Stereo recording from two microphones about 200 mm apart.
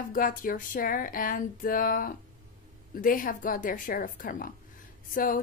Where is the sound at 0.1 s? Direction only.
45° left (ahead or behind).